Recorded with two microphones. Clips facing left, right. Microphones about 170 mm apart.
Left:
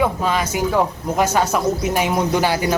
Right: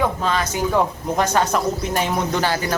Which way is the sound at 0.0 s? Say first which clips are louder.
Left 2 dB; 10° left (ahead or behind).